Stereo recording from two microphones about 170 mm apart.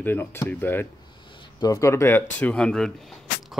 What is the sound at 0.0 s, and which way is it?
Speech, 10° left (ahead or behind).